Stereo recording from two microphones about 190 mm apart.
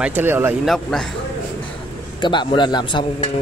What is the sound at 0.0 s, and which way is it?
Speech, 10° right (ahead or behind).